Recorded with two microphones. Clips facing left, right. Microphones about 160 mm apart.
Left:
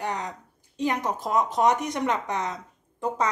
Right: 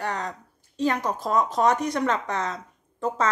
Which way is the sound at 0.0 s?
15° left (ahead or behind).